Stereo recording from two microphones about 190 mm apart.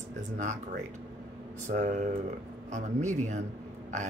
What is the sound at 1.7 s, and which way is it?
Speech, 40° right (ahead or behind).